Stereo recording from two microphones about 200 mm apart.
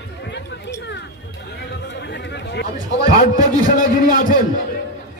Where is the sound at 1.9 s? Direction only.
60° left (ahead or behind).